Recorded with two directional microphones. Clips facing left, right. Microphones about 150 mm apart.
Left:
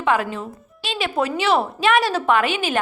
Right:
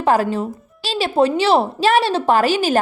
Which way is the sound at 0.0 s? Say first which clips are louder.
Right 4 dB; 35° right (ahead or behind).